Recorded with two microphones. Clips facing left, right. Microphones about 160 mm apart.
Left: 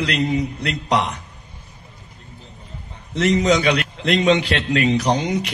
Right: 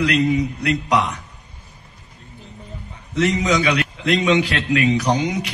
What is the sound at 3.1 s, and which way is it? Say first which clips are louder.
Speech: left 2 dB; 35° left (ahead or behind).